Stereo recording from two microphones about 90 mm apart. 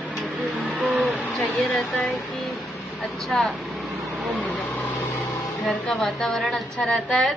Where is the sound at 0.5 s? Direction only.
15° right (ahead or behind).